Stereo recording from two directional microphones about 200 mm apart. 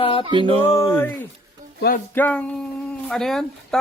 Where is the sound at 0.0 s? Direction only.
25° left (ahead or behind).